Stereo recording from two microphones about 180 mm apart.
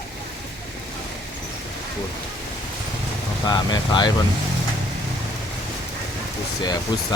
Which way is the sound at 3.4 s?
25° left (ahead or behind).